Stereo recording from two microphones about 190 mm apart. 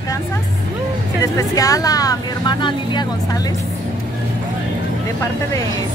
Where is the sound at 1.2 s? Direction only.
15° left (ahead or behind).